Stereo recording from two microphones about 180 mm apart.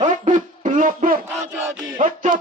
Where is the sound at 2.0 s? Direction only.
45° right (ahead or behind).